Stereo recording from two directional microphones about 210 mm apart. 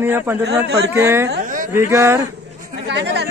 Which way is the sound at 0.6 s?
50° right (ahead or behind).